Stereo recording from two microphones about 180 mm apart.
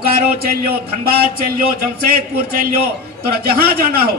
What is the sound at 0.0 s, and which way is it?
Speech, 60° right (ahead or behind).